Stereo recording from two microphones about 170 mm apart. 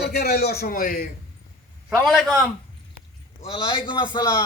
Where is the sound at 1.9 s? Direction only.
Centre (ahead or behind).